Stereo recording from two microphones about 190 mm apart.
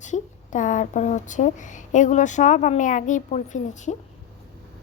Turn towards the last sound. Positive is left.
turn(degrees=40)  # may be behind; listen again after turning